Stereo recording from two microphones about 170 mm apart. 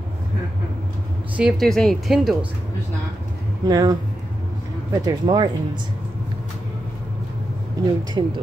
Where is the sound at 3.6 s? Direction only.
25° right (ahead or behind).